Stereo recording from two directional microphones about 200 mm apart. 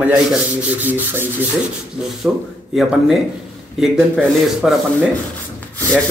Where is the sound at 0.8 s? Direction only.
10° right (ahead or behind).